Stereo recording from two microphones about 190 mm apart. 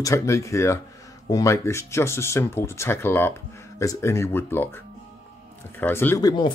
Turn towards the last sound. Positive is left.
turn(degrees=15)  # may be behind; listen again after turning